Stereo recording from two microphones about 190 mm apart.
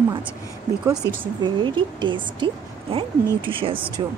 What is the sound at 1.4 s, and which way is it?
A woman's voice, 25° right (ahead or behind).